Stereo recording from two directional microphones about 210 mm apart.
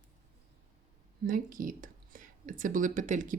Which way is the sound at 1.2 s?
40° right (ahead or behind).